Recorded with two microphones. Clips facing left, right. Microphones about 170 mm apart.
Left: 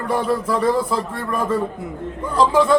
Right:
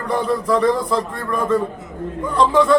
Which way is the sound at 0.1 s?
5° left (ahead or behind).